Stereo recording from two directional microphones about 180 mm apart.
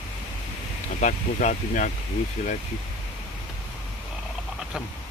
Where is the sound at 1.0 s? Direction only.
45° left (ahead or behind).